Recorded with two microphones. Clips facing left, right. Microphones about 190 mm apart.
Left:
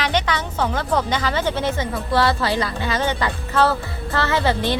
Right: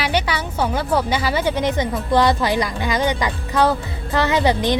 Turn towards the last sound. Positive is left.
turn(degrees=-15)  # may be behind; listen again after turning